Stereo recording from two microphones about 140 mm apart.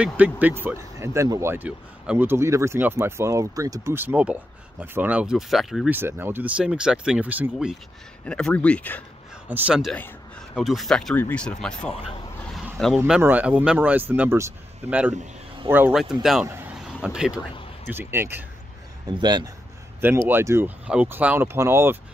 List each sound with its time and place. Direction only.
0.0 s speech: 10° right (ahead or behind)
5.9 s speech: 15° right (ahead or behind)
8.3 s speech: 5° left (ahead or behind)
9.5 s speech: 5° right (ahead or behind)
9.9 s a sound: 10° left (ahead or behind)
10.6 s speech: centre (ahead or behind)
12.4 s a sound: 5° left (ahead or behind)
13.2 s speech: 10° right (ahead or behind)
16.4 s vehicle: 15° right (ahead or behind)
16.8 s a sound: 5° right (ahead or behind)
17.8 s speech: 15° right (ahead or behind)
19.0 s a man's voice: 30° right (ahead or behind)
20.2 s speech: 15° right (ahead or behind)